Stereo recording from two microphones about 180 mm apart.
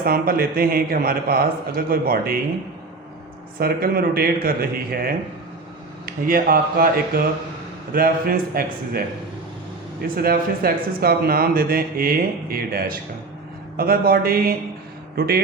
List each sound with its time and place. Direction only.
0.0 s speech: 55° right (ahead or behind)
3.6 s speech: 55° right (ahead or behind)
10.2 s speech: 55° right (ahead or behind)